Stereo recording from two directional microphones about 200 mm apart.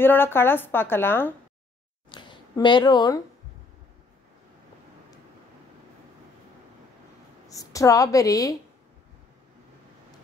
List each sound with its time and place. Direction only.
0.0 s a woman's voice: 10° left (ahead or behind)
2.0 s a sound: 25° left (ahead or behind)
7.4 s a woman's voice: 15° left (ahead or behind)